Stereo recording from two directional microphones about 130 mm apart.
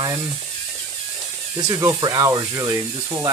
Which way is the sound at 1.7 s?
25° right (ahead or behind).